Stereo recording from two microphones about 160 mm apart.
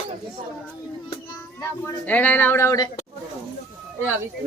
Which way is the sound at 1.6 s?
10° left (ahead or behind).